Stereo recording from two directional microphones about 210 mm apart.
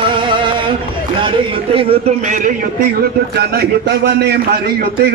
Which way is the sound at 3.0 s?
50° right (ahead or behind).